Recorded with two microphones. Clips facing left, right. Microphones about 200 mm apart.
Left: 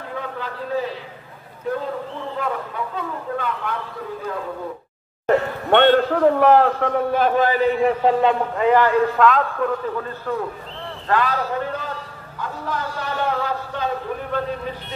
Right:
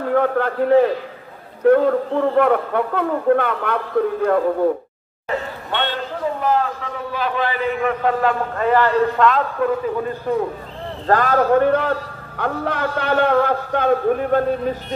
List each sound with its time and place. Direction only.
0.1 s a man's voice: 60° right (ahead or behind)
5.2 s speech: 60° left (ahead or behind); by 9.0 s 15° left (ahead or behind)
9.2 s a man's voice: centre (ahead or behind)
10.3 s a man's voice: 20° right (ahead or behind)
11.1 s a man's voice: 45° right (ahead or behind)